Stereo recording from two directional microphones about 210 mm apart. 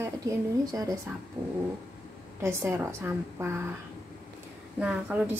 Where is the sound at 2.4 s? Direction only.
10° right (ahead or behind).